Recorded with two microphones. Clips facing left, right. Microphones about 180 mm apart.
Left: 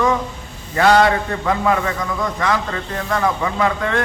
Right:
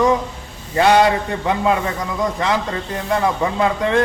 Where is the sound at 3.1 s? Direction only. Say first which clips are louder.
Right 2 dB; 25° right (ahead or behind).